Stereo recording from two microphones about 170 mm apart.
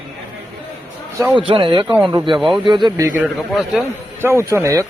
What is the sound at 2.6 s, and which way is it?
Speech, 30° right (ahead or behind).